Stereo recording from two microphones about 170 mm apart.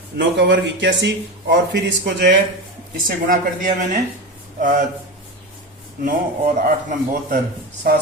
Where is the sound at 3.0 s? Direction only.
55° right (ahead or behind).